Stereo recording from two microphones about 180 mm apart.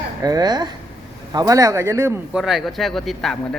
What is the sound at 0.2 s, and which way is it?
A man's voice, 20° right (ahead or behind).